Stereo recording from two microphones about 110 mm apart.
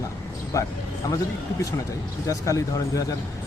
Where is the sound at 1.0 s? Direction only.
35° left (ahead or behind).